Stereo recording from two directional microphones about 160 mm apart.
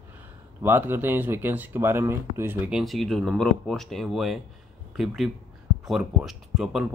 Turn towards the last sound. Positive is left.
turn(degrees=-5)  # may be behind; listen again after turning